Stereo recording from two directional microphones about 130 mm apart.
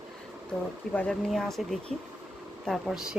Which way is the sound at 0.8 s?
5° left (ahead or behind).